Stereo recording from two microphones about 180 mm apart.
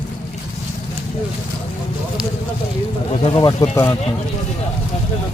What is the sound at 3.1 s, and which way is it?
Speech, 30° left (ahead or behind).